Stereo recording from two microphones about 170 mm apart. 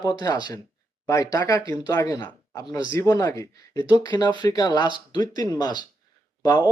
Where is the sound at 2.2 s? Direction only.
10° left (ahead or behind).